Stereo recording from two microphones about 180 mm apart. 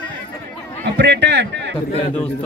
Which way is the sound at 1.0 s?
70° right (ahead or behind).